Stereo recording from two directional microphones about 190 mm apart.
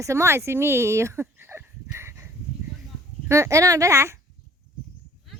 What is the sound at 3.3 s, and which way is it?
Speech, 15° right (ahead or behind).